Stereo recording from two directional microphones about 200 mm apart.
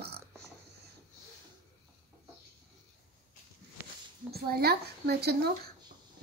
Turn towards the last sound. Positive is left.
turn(degrees=-55)  # may be behind; listen again after turning